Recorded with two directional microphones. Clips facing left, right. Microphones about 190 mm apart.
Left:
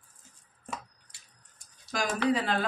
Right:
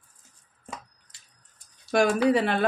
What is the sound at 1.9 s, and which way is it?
Speech, 60° right (ahead or behind).